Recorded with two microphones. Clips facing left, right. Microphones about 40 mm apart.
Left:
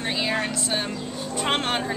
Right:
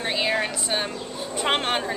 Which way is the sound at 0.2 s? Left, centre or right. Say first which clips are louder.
Right 1 dB; centre.